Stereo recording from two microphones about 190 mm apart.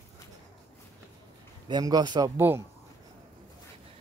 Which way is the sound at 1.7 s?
20° right (ahead or behind).